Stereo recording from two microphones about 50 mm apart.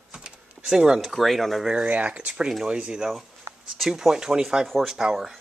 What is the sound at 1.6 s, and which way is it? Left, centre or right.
Speech, right.